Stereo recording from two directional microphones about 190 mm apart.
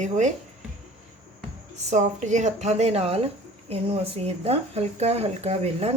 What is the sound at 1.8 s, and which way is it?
Speech, 40° right (ahead or behind).